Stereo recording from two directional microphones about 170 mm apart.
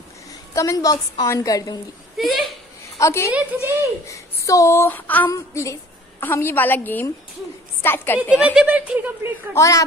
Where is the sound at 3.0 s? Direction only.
15° left (ahead or behind).